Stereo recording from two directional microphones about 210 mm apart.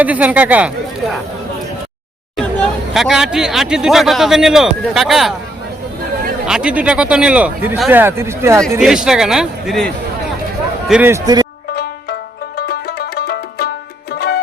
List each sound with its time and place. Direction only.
0.0 s speech: 5° right (ahead or behind)
2.3 s speech: centre (ahead or behind)
6.4 s a man's voice: 5° right (ahead or behind)
11.7 s music: 50° left (ahead or behind)